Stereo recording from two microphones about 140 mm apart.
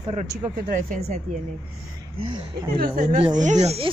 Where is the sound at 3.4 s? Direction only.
55° right (ahead or behind).